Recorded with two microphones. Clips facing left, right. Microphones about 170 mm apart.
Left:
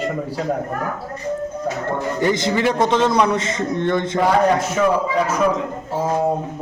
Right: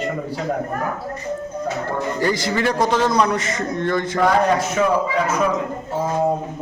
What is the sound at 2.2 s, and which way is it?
A man's voice, 20° left (ahead or behind).